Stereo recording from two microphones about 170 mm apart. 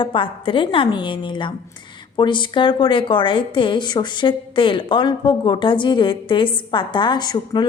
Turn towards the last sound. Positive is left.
turn(degrees=25)  # may be behind; listen again after turning